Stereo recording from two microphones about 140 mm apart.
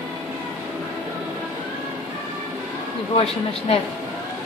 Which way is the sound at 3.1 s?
45° left (ahead or behind).